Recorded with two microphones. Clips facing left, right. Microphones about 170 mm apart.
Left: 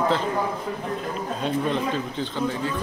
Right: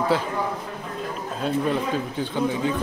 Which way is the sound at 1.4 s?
10° right (ahead or behind).